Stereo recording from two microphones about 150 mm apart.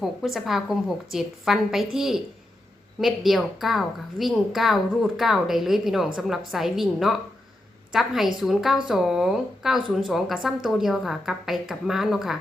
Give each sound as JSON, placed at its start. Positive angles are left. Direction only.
{"t": 0.0, "sound": "a woman's voice", "side_deg": 0}